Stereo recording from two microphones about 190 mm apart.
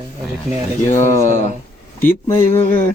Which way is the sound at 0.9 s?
40° left (ahead or behind).